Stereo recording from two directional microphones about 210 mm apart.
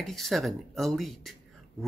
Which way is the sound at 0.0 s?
Centre (ahead or behind).